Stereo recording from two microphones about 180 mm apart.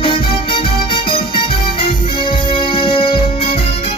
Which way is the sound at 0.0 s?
30° left (ahead or behind).